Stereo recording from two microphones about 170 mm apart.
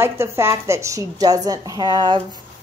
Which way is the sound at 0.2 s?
15° right (ahead or behind).